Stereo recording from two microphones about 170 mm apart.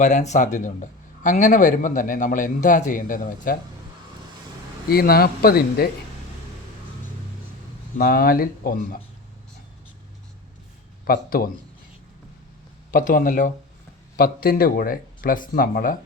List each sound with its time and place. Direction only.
0.0 s speech: 45° left (ahead or behind)
4.9 s speech: 60° left (ahead or behind)
7.9 s speech: 60° left (ahead or behind)
11.0 s speech: 60° left (ahead or behind)
12.9 s speech: 55° left (ahead or behind)